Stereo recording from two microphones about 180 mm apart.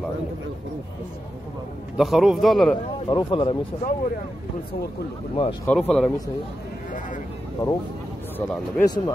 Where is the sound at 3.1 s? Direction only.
25° left (ahead or behind).